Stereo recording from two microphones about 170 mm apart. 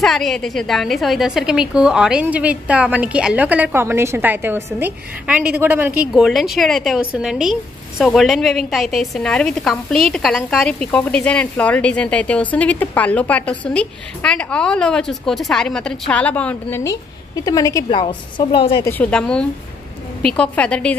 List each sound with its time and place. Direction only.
0.0 s a woman's voice: centre (ahead or behind)
16.8 s a woman's voice: 20° left (ahead or behind)
18.9 s a woman's voice: 10° left (ahead or behind)